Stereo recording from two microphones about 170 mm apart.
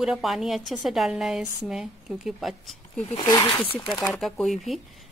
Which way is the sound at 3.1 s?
25° left (ahead or behind).